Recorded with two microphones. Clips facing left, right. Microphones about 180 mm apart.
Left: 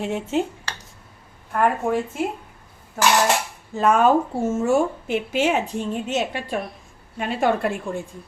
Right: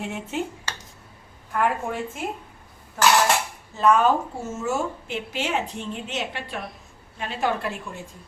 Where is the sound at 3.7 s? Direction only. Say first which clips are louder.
Even; 50° left (ahead or behind).